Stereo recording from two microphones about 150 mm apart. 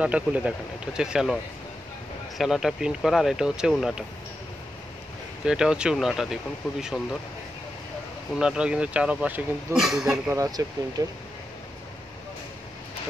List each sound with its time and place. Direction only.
0.0 s speech: 10° right (ahead or behind)
5.4 s speech: 5° right (ahead or behind)
8.4 s speech: 5° right (ahead or behind)
10.3 s speech: 25° right (ahead or behind)